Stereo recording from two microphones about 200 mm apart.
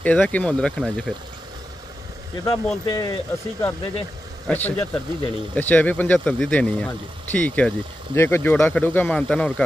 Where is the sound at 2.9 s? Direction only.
20° left (ahead or behind).